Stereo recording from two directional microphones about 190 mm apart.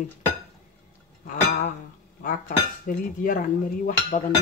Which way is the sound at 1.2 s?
45° left (ahead or behind).